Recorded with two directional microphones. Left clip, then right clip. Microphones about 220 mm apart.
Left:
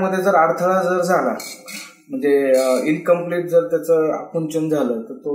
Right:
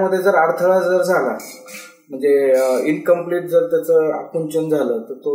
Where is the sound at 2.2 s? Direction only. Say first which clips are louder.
Right 1 dB; centre (ahead or behind).